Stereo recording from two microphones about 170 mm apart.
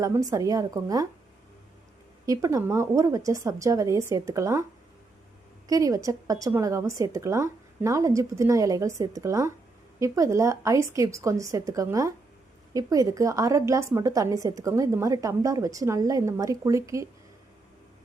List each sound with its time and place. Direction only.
0.0 s a woman's voice: 20° right (ahead or behind)
2.2 s a woman's voice: 20° right (ahead or behind)
5.6 s a woman's voice: 20° right (ahead or behind)